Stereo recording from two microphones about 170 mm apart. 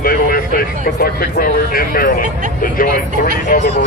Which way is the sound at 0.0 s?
60° left (ahead or behind).